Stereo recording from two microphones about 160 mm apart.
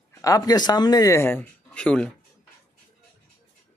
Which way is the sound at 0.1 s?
20° left (ahead or behind).